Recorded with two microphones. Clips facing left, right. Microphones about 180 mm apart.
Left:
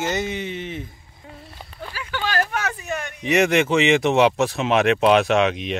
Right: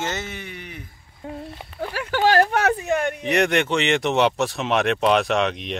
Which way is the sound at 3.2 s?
Centre (ahead or behind).